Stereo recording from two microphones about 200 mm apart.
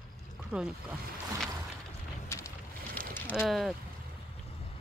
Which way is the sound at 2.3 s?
15° left (ahead or behind).